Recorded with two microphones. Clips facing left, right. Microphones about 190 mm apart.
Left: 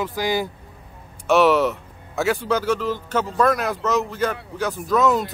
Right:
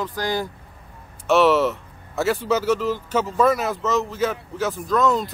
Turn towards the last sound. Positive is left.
turn(degrees=5)  # may be behind; listen again after turning